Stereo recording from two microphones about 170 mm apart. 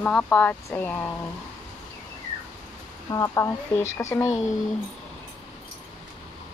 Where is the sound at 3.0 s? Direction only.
20° left (ahead or behind).